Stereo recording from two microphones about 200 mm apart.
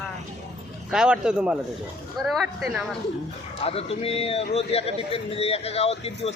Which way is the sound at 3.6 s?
30° left (ahead or behind).